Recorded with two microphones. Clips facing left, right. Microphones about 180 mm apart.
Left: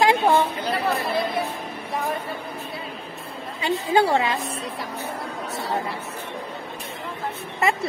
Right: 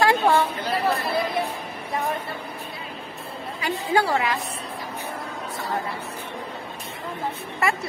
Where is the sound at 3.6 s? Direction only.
25° left (ahead or behind).